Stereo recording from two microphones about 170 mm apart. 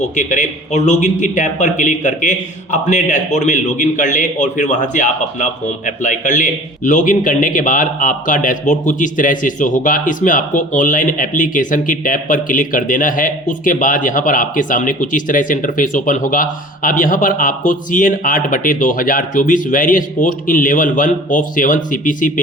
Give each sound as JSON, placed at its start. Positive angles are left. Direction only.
{"t": 0.0, "sound": "a man's voice", "side_deg": 45}